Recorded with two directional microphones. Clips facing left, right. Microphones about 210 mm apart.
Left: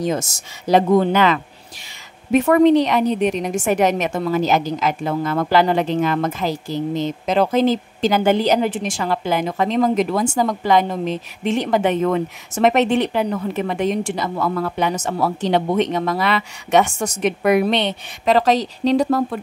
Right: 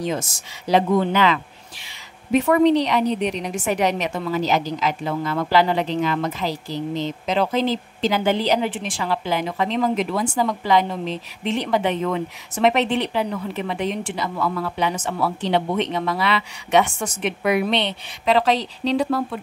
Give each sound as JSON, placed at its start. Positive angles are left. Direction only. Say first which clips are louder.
{"t": 0.0, "sound": "a woman's voice", "louder": "left 3 dB", "side_deg": 45}